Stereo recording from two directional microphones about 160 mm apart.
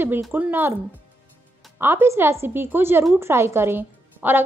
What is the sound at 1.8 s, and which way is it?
A woman's voice, 15° right (ahead or behind).